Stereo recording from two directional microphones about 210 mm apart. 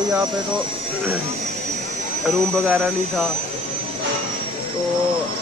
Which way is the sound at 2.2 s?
Centre (ahead or behind).